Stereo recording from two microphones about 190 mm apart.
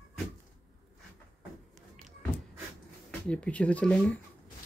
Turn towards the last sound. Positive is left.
turn(degrees=5)  # may be behind; listen again after turning